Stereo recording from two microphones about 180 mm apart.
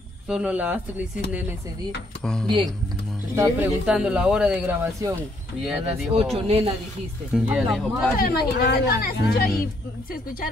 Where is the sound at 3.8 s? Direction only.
5° right (ahead or behind).